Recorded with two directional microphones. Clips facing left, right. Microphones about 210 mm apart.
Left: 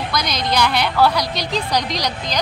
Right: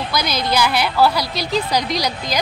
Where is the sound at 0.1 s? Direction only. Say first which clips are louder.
Right 2 dB; 5° right (ahead or behind).